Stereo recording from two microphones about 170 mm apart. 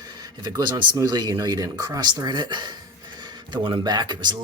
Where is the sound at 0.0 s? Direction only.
25° right (ahead or behind).